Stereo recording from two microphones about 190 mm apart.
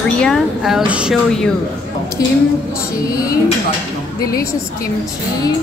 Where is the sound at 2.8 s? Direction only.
20° left (ahead or behind).